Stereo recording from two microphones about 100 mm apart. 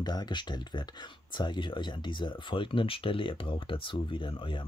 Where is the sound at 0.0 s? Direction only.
45° left (ahead or behind).